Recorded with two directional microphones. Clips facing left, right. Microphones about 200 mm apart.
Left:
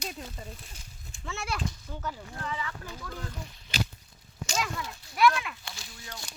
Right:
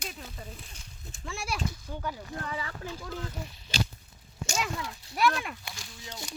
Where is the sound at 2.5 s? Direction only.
35° right (ahead or behind).